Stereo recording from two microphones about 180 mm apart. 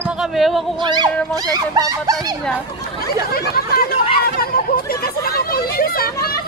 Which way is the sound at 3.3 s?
55° left (ahead or behind).